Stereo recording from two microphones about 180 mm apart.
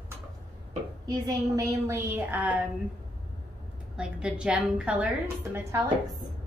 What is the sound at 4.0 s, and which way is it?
A woman's voice, 5° right (ahead or behind).